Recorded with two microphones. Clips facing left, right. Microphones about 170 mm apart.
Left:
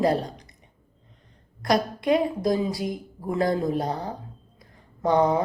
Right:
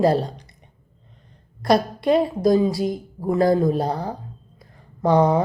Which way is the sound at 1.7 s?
30° right (ahead or behind).